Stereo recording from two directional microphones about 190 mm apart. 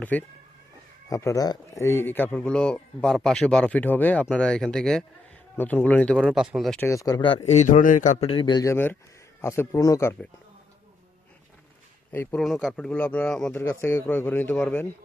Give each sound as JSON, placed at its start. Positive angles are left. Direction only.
{"t": 0.0, "sound": "a man's voice", "side_deg": 10}
{"t": 6.1, "sound": "a man's voice", "side_deg": -5}
{"t": 6.7, "sound": "a man's voice", "side_deg": 15}
{"t": 12.1, "sound": "speech", "side_deg": 10}
{"t": 12.4, "sound": "speech", "side_deg": 0}